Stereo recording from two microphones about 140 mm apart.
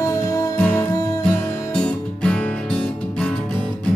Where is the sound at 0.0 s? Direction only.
25° left (ahead or behind).